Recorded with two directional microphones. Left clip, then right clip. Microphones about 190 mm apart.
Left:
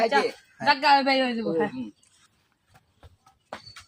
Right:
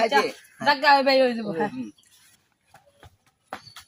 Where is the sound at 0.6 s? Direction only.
15° right (ahead or behind).